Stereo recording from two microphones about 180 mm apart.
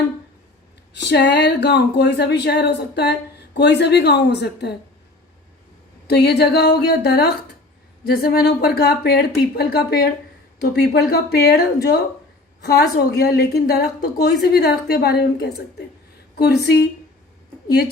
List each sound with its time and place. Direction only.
1.1 s speech: 70° left (ahead or behind)
6.1 s a woman's voice: 65° left (ahead or behind)